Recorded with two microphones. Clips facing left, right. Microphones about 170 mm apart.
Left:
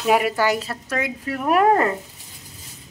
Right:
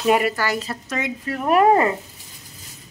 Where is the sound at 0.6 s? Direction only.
5° left (ahead or behind).